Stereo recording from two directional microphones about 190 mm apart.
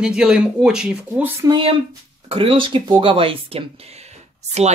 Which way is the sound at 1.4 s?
25° right (ahead or behind).